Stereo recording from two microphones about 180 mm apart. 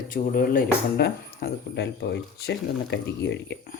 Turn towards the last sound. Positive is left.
turn(degrees=75)  # may be behind; listen again after turning